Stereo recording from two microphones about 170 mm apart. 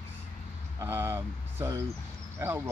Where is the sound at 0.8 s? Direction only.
15° right (ahead or behind).